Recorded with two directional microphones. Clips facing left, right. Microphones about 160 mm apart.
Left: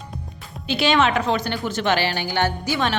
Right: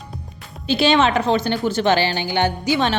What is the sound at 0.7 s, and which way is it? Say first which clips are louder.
A woman's voice: right 3 dB; 30° right (ahead or behind).